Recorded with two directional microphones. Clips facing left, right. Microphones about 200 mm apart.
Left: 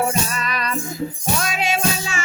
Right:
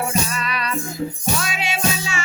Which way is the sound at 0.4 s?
45° left (ahead or behind).